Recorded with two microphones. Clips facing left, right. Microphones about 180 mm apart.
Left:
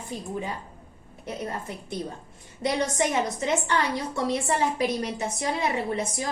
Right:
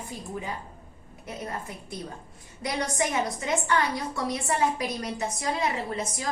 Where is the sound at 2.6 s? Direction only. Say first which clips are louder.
Left 3 dB; 25° left (ahead or behind).